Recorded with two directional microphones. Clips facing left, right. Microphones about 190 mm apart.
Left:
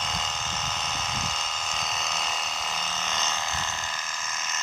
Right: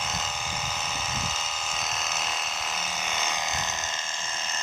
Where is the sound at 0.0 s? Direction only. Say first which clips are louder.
Even; 5° right (ahead or behind).